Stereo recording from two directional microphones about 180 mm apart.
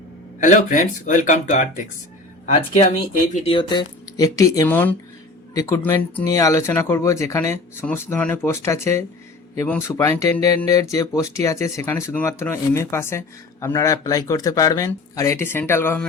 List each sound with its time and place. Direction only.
0.3 s speech: 45° left (ahead or behind)
3.4 s speech: 30° left (ahead or behind); by 16.0 s 10° left (ahead or behind)